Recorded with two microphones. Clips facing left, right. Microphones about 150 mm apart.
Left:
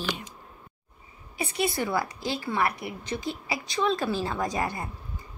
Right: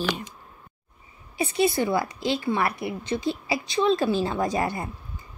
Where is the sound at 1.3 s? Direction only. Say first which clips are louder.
Right 5 dB; 25° right (ahead or behind).